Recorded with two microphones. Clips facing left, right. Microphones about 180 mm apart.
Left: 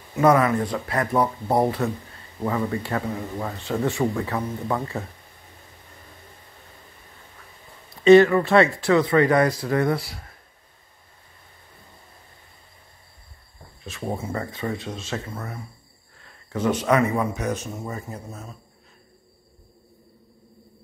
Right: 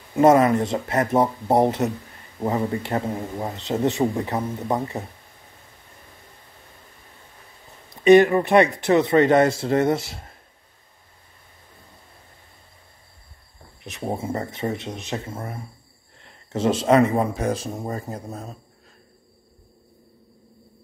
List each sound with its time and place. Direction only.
0.1 s a man's voice: 25° right (ahead or behind)
8.0 s a man's voice: 15° right (ahead or behind)
13.8 s a man's voice: 20° right (ahead or behind); by 18.6 s 35° right (ahead or behind)